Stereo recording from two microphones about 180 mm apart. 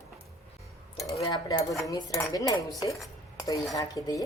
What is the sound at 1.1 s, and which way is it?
Cutlery, 20° left (ahead or behind).